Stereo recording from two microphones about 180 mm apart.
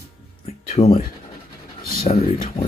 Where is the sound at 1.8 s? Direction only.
55° left (ahead or behind).